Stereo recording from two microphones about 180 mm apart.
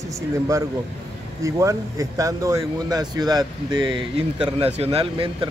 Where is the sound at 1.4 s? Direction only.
15° right (ahead or behind).